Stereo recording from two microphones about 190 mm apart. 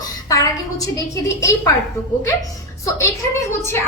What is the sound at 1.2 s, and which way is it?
Speech, 80° left.